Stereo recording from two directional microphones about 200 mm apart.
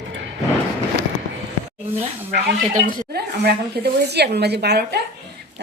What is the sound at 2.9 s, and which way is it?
A woman's voice, 50° right (ahead or behind).